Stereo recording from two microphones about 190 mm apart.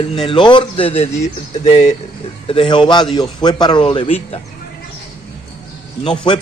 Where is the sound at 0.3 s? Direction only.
25° left (ahead or behind).